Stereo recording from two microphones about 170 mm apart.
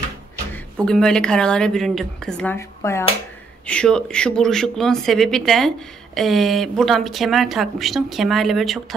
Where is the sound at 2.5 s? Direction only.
15° left (ahead or behind).